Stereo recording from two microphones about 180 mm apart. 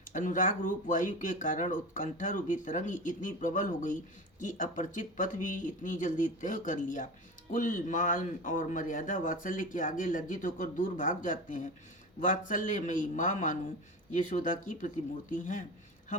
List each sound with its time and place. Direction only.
0.1 s speech: 45° left (ahead or behind)